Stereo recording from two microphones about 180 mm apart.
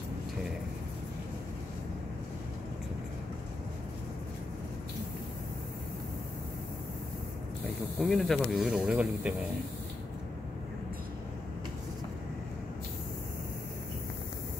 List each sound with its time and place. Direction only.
8.0 s speech: centre (ahead or behind)